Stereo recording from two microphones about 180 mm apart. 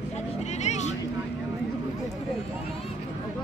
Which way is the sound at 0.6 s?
40° left (ahead or behind).